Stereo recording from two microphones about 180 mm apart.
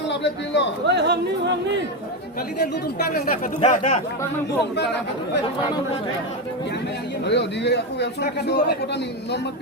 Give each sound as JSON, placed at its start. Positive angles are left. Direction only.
{"t": 0.1, "sound": "a man's voice", "side_deg": 75}
{"t": 0.9, "sound": "speech", "side_deg": -70}
{"t": 3.1, "sound": "speech", "side_deg": 55}
{"t": 3.6, "sound": "speech", "side_deg": 35}
{"t": 7.3, "sound": "a man's voice", "side_deg": 70}